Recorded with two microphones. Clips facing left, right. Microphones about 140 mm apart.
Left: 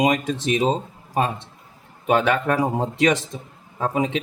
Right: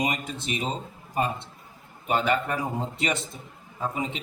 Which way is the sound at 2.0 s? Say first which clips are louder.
Left 6 dB; 80° left.